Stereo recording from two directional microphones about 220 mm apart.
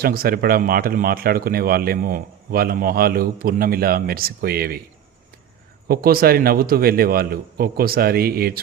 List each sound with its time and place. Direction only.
0.0 s speech: 45° right (ahead or behind)
5.9 s speech: 45° right (ahead or behind)